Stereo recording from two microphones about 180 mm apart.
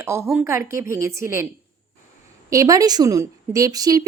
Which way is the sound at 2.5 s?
20° right (ahead or behind).